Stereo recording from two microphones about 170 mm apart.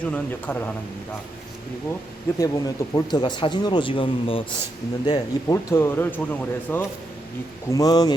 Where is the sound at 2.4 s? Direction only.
20° left (ahead or behind).